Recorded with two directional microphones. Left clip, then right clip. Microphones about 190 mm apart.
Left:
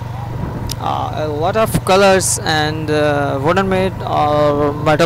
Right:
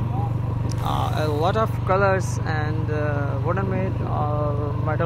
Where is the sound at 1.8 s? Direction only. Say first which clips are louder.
Left 10 dB; 50° left (ahead or behind).